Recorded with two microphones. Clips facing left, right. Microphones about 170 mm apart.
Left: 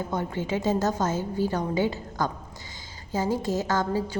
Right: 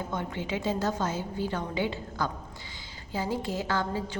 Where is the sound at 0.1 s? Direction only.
40° left (ahead or behind).